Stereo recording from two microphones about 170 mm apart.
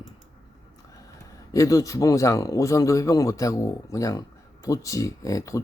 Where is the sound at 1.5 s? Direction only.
20° left (ahead or behind).